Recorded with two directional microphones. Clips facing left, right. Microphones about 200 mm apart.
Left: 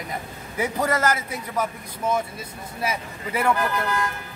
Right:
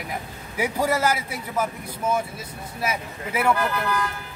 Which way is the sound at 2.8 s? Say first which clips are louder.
Even; 5° right (ahead or behind).